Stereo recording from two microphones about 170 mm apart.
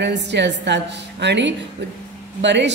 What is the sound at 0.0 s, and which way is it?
A woman's voice, 90° right.